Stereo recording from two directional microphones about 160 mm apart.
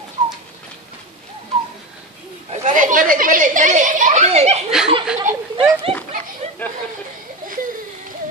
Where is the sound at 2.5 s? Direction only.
50° right (ahead or behind).